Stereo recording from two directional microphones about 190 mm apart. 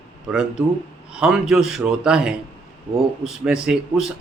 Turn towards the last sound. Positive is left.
turn(degrees=-5)  # may be behind; listen again after turning